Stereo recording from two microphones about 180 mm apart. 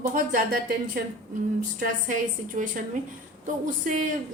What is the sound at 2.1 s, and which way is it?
A woman's voice, 45° right (ahead or behind).